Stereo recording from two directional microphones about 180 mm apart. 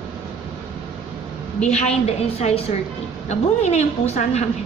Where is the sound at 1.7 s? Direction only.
35° left (ahead or behind).